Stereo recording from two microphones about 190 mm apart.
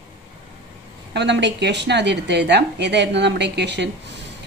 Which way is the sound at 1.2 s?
65° right (ahead or behind).